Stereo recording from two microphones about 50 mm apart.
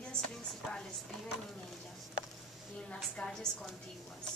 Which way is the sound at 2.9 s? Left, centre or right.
Centre.